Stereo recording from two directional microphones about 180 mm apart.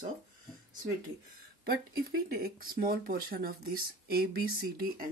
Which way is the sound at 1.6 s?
55° right (ahead or behind).